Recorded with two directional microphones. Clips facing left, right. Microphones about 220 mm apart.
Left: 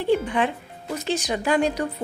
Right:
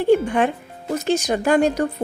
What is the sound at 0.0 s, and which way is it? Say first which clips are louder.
Speech: right 5 dB; 45° right (ahead or behind).